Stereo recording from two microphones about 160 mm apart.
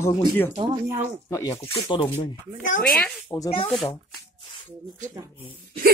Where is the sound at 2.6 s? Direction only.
60° left (ahead or behind).